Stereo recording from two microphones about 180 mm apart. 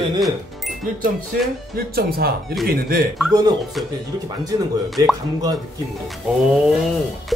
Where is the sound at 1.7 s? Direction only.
60° right (ahead or behind).